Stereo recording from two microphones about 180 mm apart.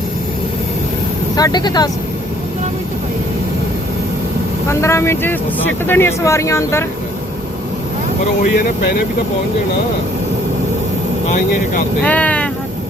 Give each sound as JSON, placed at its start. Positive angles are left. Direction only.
{"t": 1.4, "sound": "speech", "side_deg": 20}
{"t": 4.7, "sound": "speech", "side_deg": 15}
{"t": 12.0, "sound": "speech", "side_deg": 10}